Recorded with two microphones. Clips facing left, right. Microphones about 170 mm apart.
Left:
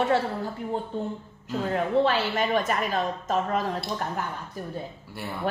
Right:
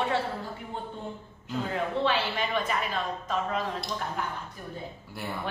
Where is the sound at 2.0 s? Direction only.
45° left (ahead or behind).